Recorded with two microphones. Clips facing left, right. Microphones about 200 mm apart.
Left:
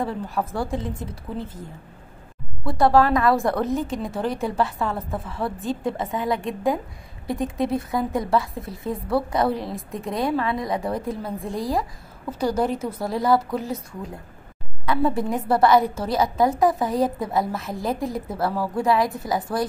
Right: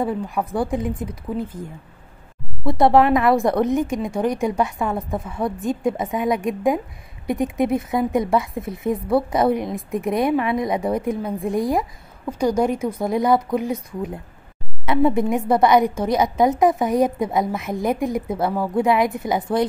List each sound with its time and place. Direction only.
0.0 s a woman's voice: 15° right (ahead or behind)
2.7 s a woman's voice: 20° right (ahead or behind)